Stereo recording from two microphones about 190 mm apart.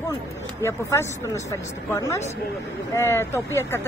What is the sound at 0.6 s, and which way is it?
Speech, 15° left (ahead or behind).